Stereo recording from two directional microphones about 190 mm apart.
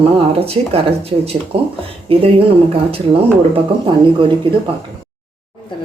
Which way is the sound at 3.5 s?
25° right (ahead or behind).